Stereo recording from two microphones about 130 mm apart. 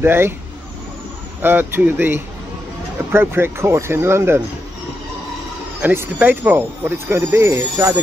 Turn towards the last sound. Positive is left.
turn(degrees=-20)  # may be behind; listen again after turning